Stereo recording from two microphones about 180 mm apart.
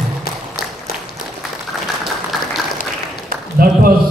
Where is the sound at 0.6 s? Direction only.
55° left (ahead or behind).